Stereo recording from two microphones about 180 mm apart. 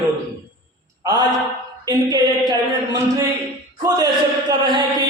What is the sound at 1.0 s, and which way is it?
Mantra, 20° right (ahead or behind).